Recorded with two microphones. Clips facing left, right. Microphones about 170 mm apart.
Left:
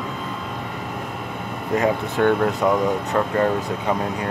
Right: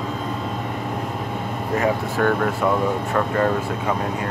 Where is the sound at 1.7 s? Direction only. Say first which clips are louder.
Left 1 dB; 20° left (ahead or behind).